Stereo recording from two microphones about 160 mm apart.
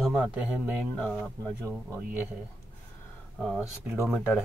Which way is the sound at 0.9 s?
5° left (ahead or behind).